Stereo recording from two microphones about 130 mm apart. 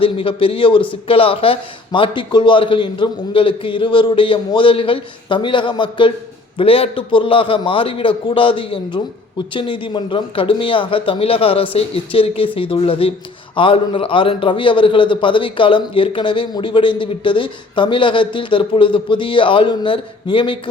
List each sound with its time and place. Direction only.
0.0 s a man's voice: 45° left (ahead or behind)